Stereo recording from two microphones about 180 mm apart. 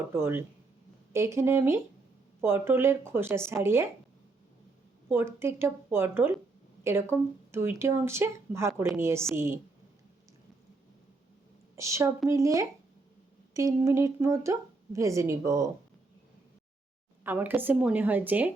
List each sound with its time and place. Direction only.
0.0 s speech: 10° right (ahead or behind)
5.0 s speech: 15° right (ahead or behind)
11.8 s speech: 15° right (ahead or behind)
17.2 s speech: 10° right (ahead or behind)